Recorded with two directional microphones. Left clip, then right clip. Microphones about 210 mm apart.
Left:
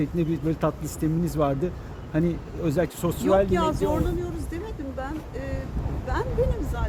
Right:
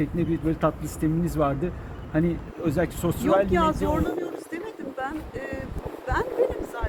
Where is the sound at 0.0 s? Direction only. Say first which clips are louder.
Even; 60° left (ahead or behind).